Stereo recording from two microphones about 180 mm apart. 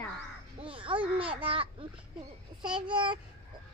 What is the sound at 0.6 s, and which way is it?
A child's voice, 30° right (ahead or behind).